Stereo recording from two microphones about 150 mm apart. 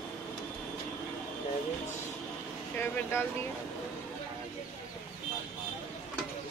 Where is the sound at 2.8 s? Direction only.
15° left (ahead or behind).